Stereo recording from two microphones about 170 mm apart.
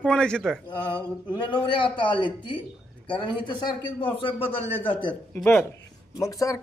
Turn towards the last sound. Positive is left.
turn(degrees=20)  # may be behind; listen again after turning